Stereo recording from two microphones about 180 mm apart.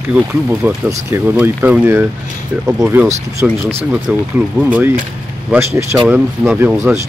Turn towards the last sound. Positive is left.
turn(degrees=-10)  # may be behind; listen again after turning